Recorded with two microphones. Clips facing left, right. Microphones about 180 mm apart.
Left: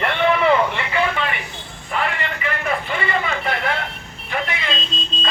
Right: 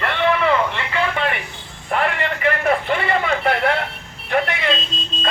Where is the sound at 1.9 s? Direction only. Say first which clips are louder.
Right 3 dB; 55° right (ahead or behind).